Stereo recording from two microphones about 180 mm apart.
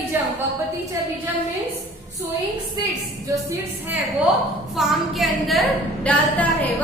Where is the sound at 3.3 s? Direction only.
15° right (ahead or behind).